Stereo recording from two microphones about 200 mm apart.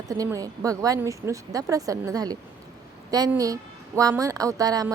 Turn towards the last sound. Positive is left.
turn(degrees=-20)  # may be behind; listen again after turning